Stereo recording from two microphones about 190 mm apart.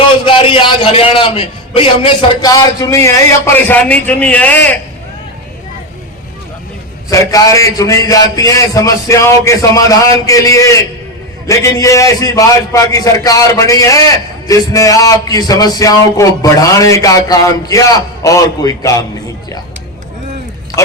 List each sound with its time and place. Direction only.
0.3 s a man's voice: 30° left (ahead or behind); by 4.8 s 10° left (ahead or behind)
7.1 s a man's voice: 15° left (ahead or behind)